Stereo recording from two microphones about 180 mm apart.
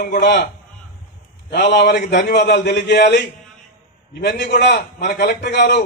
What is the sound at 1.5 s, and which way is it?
A man's voice, 70° left (ahead or behind).